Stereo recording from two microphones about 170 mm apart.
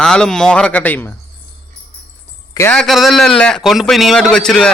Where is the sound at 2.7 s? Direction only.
Centre (ahead or behind).